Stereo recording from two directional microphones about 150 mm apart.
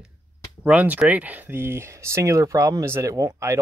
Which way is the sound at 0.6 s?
10° right (ahead or behind).